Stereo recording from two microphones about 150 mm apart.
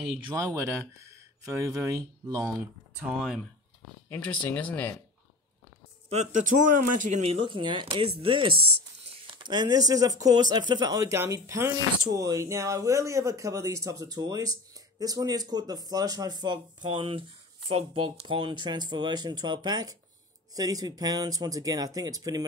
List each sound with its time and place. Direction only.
0.3 s speech: 25° right (ahead or behind)
3.1 s speech: 5° right (ahead or behind)
4.1 s speech: 10° left (ahead or behind)
6.0 s a man's voice: 50° right (ahead or behind)
7.4 s speech: 30° right (ahead or behind)